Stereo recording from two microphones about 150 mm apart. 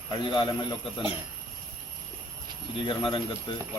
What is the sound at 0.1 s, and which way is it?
Speech, 30° left (ahead or behind).